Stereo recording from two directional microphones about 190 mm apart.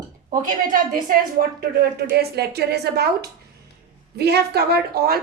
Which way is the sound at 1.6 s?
55° right (ahead or behind).